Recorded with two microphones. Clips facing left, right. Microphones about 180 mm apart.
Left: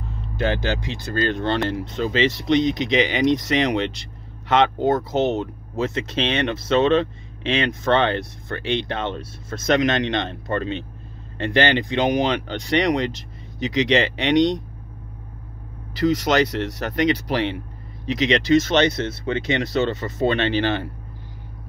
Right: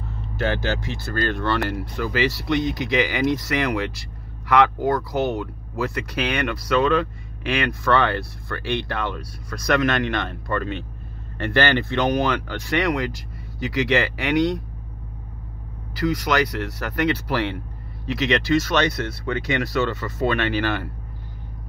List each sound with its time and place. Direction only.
0.4 s speech: 15° left (ahead or behind)
15.9 s speech: 20° left (ahead or behind)